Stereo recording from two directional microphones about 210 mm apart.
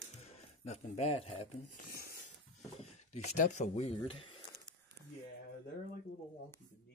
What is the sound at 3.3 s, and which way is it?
Speech, 35° left (ahead or behind).